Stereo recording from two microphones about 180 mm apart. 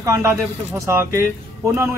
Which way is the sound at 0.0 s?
15° right (ahead or behind).